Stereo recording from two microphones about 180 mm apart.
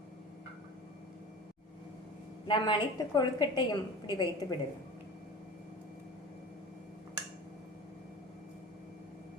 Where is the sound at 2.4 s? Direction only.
25° left (ahead or behind).